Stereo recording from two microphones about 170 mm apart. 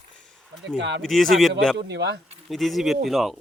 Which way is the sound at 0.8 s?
90° right.